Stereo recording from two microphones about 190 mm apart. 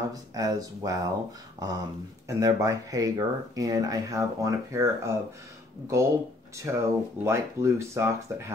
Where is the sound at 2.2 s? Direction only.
15° right (ahead or behind).